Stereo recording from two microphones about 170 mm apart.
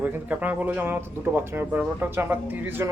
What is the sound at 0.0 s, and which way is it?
Speech, 10° right (ahead or behind).